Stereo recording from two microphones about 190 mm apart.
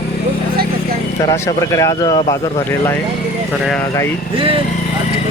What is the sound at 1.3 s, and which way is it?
A man's voice, 20° left (ahead or behind).